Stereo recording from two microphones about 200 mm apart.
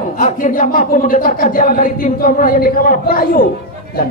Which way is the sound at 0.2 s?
40° left (ahead or behind).